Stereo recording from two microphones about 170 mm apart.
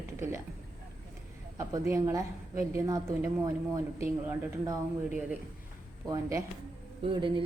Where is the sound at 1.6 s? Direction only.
20° right (ahead or behind).